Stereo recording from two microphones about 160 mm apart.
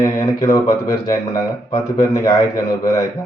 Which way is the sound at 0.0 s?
20° left (ahead or behind).